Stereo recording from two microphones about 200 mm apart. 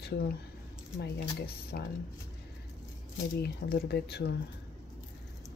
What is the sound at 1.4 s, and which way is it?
Speech, 50° left (ahead or behind).